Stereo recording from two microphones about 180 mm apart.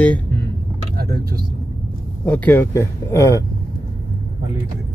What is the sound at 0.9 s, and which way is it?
Vehicle, 60° right (ahead or behind).